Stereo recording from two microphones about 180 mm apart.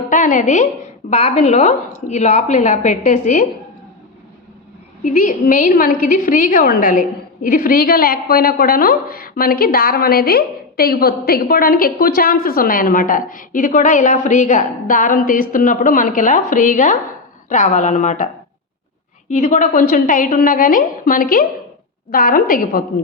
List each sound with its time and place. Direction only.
0.1 s a woman's voice: 45° left (ahead or behind)
5.0 s a woman's voice: 45° left (ahead or behind)
19.3 s a woman's voice: 40° left (ahead or behind)